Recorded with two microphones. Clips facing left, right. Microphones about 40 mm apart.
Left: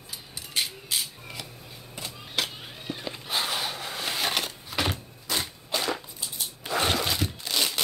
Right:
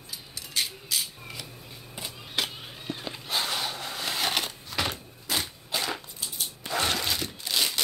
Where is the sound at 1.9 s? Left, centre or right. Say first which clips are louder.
Left 1 dB; centre.